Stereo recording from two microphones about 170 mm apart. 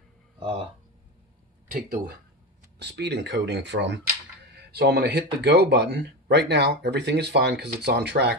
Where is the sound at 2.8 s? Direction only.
80° right.